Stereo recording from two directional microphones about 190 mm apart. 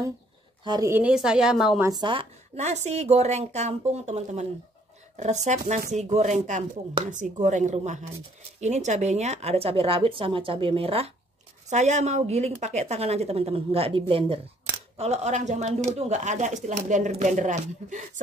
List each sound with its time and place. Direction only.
0.7 s a woman's voice: 15° right (ahead or behind)
1.8 s speech: 20° right (ahead or behind); by 18.2 s 40° right (ahead or behind)